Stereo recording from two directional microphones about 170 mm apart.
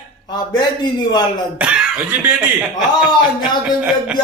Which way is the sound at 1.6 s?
5° right (ahead or behind).